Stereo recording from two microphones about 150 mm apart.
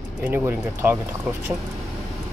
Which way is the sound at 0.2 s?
15° right (ahead or behind).